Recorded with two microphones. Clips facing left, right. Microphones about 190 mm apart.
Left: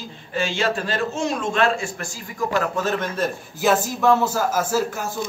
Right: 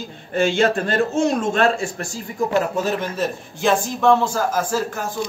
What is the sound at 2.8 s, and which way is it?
A man's voice, 5° right (ahead or behind).